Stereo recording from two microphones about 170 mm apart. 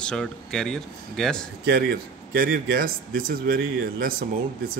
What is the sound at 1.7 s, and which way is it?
Speech, 65° right (ahead or behind).